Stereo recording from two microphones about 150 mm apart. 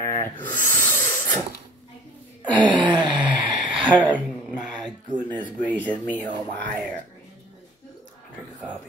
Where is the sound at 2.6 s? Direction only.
30° right (ahead or behind).